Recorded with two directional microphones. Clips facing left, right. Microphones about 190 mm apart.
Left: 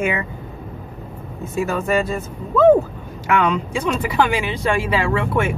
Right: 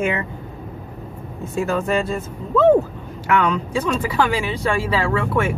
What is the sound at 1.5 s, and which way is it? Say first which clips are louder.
Speech: left 1 dB; 5° left (ahead or behind).